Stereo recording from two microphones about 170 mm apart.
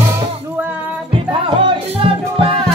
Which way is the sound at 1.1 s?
30° right (ahead or behind).